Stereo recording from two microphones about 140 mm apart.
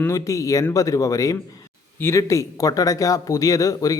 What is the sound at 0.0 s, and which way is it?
A man's voice, 25° left (ahead or behind).